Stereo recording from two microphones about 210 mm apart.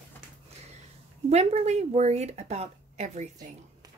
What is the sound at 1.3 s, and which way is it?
A woman's voice, 30° right (ahead or behind).